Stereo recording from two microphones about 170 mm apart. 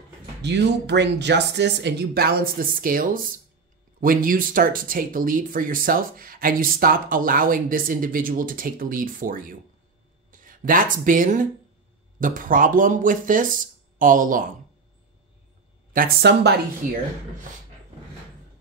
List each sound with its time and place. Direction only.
0.4 s speech: 90° right; by 14.4 s 50° right (ahead or behind)
15.9 s speech: 55° right (ahead or behind)